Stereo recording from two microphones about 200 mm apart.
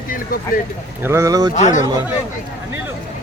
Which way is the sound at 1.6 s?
35° left (ahead or behind).